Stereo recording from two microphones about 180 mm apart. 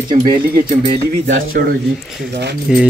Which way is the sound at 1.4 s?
55° right (ahead or behind).